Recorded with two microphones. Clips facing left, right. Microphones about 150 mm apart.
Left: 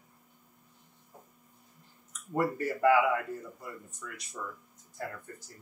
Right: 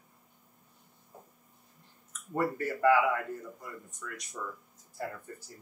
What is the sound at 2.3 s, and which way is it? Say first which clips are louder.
Speech: left 1 dB; 10° left (ahead or behind).